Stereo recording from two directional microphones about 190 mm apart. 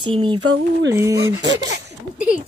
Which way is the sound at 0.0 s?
25° right (ahead or behind).